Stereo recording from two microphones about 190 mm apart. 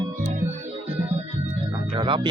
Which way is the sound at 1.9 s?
25° right (ahead or behind).